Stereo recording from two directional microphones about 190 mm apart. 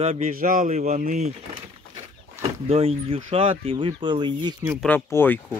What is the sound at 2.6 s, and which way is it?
Speech, 30° right (ahead or behind).